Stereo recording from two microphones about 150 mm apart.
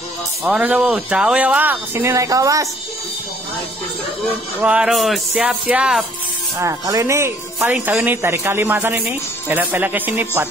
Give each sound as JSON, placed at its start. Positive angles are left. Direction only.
{"t": 0.4, "sound": "speech", "side_deg": -10}
{"t": 4.6, "sound": "speech", "side_deg": -5}
{"t": 6.6, "sound": "speech", "side_deg": -20}